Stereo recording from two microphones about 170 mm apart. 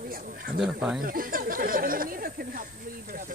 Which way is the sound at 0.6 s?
5° right (ahead or behind).